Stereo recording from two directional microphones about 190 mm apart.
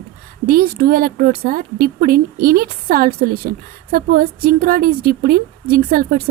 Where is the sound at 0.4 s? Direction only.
50° right (ahead or behind).